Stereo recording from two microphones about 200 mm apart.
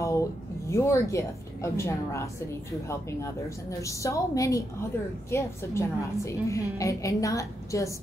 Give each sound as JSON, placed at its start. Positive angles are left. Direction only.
{"t": 0.0, "sound": "a woman's voice", "side_deg": 15}